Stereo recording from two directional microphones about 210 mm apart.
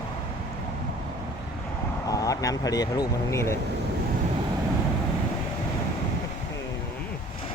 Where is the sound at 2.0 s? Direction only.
15° left (ahead or behind).